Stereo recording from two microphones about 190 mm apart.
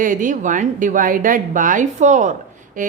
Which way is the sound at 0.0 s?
45° right (ahead or behind).